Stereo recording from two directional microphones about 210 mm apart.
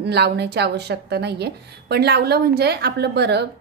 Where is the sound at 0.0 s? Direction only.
50° right (ahead or behind).